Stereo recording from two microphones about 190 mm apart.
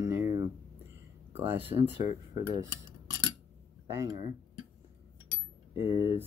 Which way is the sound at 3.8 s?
15° right (ahead or behind).